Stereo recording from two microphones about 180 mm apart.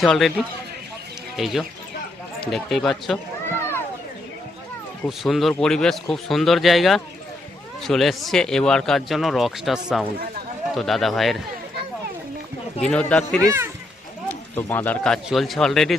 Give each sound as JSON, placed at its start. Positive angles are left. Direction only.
{"t": 0.0, "sound": "speech", "side_deg": 0}
{"t": 5.0, "sound": "speech", "side_deg": 0}
{"t": 12.8, "sound": "speech", "side_deg": 5}
{"t": 13.4, "sound": "speech", "side_deg": -15}
{"t": 14.5, "sound": "speech", "side_deg": 10}